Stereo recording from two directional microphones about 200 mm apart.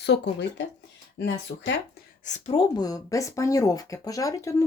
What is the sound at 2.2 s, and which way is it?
Speech, 35° left (ahead or behind).